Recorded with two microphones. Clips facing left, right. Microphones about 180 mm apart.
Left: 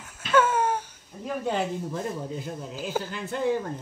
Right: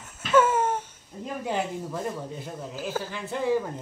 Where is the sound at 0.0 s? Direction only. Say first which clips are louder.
Right 1 dB; 5° right (ahead or behind).